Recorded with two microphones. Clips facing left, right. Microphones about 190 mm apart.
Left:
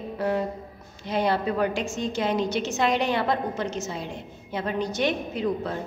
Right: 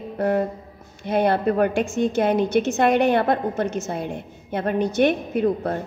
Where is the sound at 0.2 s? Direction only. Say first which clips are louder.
Right 5 dB; 55° right (ahead or behind).